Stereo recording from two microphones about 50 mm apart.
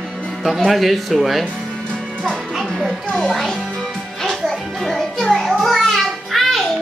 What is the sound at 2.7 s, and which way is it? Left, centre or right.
Music, centre.